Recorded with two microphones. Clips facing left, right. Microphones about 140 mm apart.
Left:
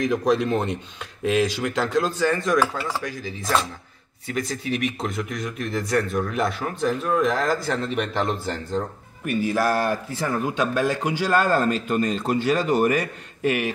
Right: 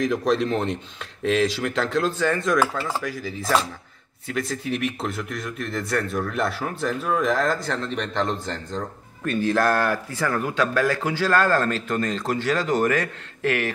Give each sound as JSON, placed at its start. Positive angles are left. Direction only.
{"t": 0.0, "sound": "a man's voice", "side_deg": 0}